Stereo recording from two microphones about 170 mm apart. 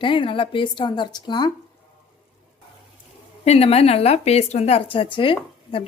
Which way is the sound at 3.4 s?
35° left (ahead or behind).